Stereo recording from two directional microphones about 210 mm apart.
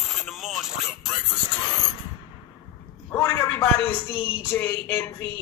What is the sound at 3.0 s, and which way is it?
A man's voice, 15° left (ahead or behind).